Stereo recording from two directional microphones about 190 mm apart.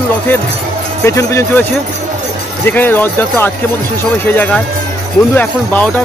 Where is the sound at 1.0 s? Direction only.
15° left (ahead or behind).